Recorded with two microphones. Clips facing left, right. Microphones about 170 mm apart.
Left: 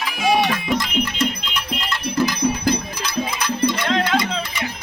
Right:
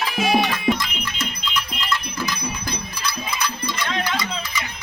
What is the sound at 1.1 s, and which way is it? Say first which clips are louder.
Music: left 5 dB; 60° left (ahead or behind).